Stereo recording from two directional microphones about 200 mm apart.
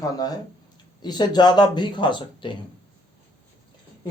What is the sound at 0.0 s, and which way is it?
Speech, 20° left (ahead or behind).